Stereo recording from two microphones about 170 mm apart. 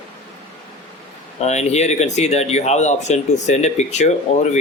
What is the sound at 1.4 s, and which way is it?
Speech, 40° left (ahead or behind).